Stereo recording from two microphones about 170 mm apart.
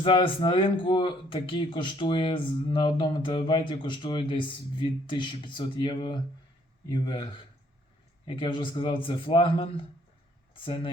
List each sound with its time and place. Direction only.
0.0 s speech: 30° left (ahead or behind)